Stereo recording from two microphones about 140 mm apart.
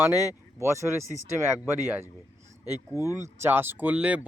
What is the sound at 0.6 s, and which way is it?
Speech, 20° right (ahead or behind).